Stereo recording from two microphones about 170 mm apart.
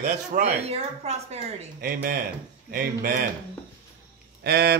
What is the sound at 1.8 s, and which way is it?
Speech, 55° right (ahead or behind).